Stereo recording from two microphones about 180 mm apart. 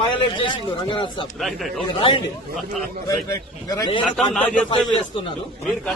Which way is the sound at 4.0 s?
5° left (ahead or behind).